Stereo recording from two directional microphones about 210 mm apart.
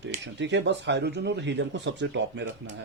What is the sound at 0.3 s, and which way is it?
Speech, 60° right (ahead or behind).